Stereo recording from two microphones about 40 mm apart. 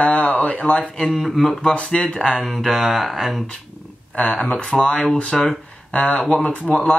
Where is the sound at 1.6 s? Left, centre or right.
Left.